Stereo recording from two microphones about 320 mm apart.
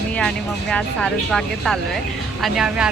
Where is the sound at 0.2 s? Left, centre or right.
Centre.